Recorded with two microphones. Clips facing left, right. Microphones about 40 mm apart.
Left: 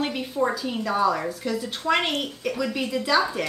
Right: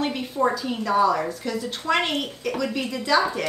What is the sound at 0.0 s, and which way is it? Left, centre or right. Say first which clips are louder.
A woman's voice: right 2 dB; centre.